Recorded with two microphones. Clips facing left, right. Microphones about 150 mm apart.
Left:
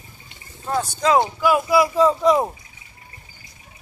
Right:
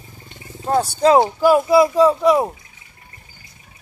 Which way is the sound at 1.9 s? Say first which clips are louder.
Right 2 dB; 5° right (ahead or behind).